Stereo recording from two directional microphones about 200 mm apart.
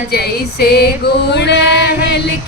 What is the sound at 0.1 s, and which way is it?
Female singing, 55° left (ahead or behind).